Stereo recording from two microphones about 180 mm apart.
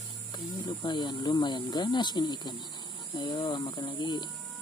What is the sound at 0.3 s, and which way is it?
Speech, 25° left (ahead or behind).